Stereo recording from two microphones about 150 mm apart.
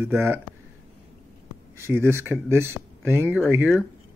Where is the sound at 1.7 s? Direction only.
15° right (ahead or behind).